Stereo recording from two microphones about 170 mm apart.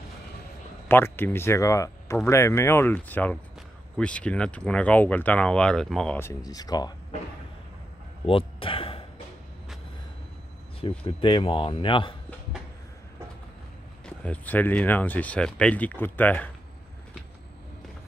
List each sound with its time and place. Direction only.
0.8 s speech: 15° left (ahead or behind)
6.1 s speech: 20° left (ahead or behind)
8.3 s a sound: 30° left (ahead or behind)
10.8 s speech: 30° left (ahead or behind)
14.0 s speech: 10° left (ahead or behind)